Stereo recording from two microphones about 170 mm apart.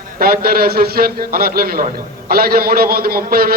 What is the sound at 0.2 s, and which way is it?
A man's voice, 60° right (ahead or behind).